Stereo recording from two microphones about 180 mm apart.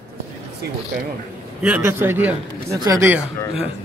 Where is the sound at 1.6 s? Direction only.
10° right (ahead or behind).